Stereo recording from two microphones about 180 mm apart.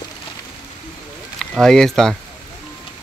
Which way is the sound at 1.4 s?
Centre (ahead or behind).